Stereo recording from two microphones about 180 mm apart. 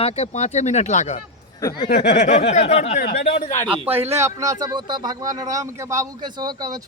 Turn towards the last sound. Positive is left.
turn(degrees=-20)  # may be behind; listen again after turning